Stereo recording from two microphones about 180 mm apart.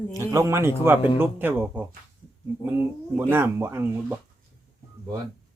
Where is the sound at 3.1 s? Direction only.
10° right (ahead or behind).